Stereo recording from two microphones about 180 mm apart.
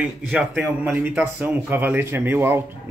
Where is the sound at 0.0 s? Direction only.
5° right (ahead or behind).